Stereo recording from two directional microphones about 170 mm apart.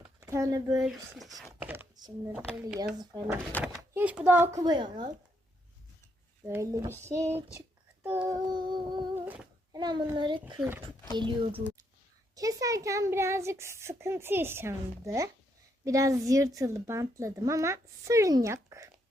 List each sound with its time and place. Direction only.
0.2 s speech: 20° right (ahead or behind)
0.8 s speech: 5° right (ahead or behind)
1.6 s a sound: 10° right (ahead or behind)
2.0 s speech: 25° right (ahead or behind)
2.3 s a child's voice: 10° right (ahead or behind)
3.0 s a child's voice: 25° right (ahead or behind)
3.6 s a child's voice: 10° right (ahead or behind)
4.6 s a child's voice: 25° right (ahead or behind)
6.5 s a child's voice: 20° right (ahead or behind)
8.2 s humming: 25° right (ahead or behind)
9.1 s humming: 10° right (ahead or behind)
9.7 s a sound: 25° right (ahead or behind)
10.2 s a child's voice: 25° right (ahead or behind)